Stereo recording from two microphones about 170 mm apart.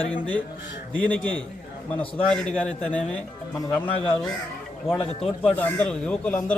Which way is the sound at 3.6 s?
20° left (ahead or behind).